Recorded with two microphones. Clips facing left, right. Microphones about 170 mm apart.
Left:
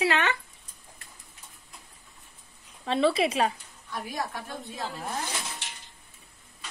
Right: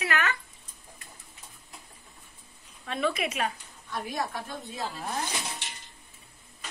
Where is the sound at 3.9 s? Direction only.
5° left (ahead or behind).